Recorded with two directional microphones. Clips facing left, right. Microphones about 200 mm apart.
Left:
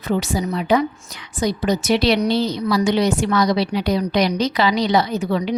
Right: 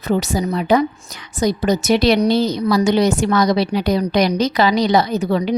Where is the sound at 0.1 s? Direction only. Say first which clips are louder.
Right 2 dB; 40° right (ahead or behind).